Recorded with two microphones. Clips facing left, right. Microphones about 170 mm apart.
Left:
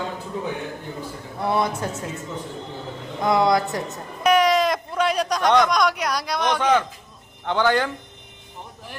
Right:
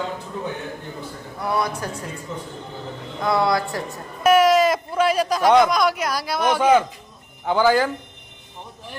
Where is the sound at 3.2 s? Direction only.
20° left (ahead or behind).